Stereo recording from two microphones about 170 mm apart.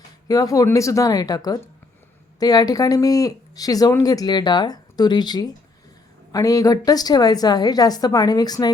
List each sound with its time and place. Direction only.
0.3 s speech: 20° left (ahead or behind)